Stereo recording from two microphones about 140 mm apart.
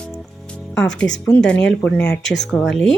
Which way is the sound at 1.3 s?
5° left (ahead or behind).